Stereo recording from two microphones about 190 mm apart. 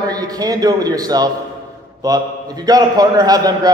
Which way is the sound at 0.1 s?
20° right (ahead or behind).